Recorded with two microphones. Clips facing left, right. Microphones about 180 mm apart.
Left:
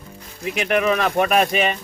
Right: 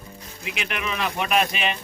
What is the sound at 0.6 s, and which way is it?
A man's voice, 45° left (ahead or behind).